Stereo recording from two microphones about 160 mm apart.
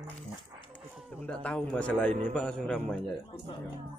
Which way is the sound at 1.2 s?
5° left (ahead or behind).